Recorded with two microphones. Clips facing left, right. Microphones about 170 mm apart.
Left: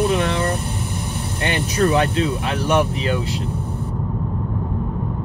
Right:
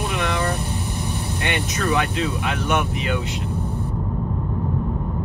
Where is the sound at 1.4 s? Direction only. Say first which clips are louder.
Left 6 dB; 30° left (ahead or behind).